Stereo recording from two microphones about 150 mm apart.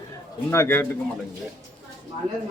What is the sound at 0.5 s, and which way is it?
Speech, 15° left (ahead or behind).